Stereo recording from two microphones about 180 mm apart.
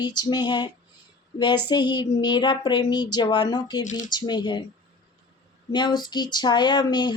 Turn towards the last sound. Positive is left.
turn(degrees=25)  # may be behind; listen again after turning